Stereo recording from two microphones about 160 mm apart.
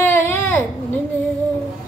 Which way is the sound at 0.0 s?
15° left (ahead or behind).